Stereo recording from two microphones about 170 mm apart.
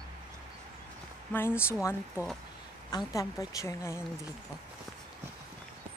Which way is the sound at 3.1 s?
20° left (ahead or behind).